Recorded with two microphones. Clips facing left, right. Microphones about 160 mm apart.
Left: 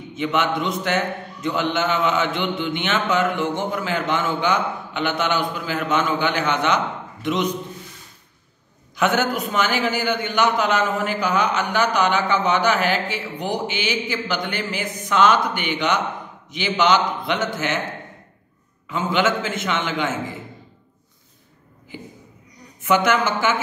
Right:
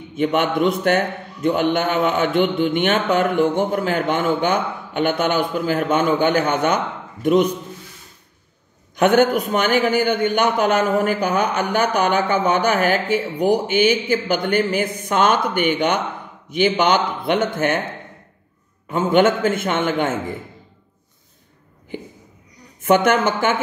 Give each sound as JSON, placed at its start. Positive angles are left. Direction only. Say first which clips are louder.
{"t": 0.1, "sound": "a man's voice", "louder": "right 3 dB", "side_deg": -50}
{"t": 8.9, "sound": "a man's voice", "louder": "right 6 dB", "side_deg": -55}
{"t": 11.8, "sound": "a man's voice", "louder": "even", "side_deg": -10}
{"t": 12.1, "sound": "a man's voice", "louder": "right 2 dB", "side_deg": -50}
{"t": 18.9, "sound": "a man's voice", "louder": "right 5 dB", "side_deg": -50}
{"t": 22.8, "sound": "a man's voice", "louder": "right 3 dB", "side_deg": -55}